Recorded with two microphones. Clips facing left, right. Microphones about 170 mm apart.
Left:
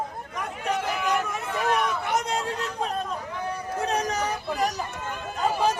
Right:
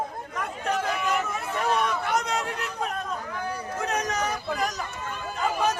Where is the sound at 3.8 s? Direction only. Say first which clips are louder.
Left 1 dB; 35° left (ahead or behind).